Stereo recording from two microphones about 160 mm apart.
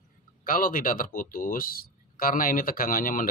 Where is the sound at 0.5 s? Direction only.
60° left (ahead or behind).